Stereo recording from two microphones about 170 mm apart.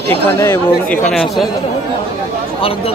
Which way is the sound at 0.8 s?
5° left (ahead or behind).